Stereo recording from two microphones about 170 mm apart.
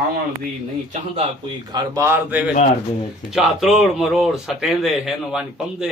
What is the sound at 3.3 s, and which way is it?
Speech, centre (ahead or behind).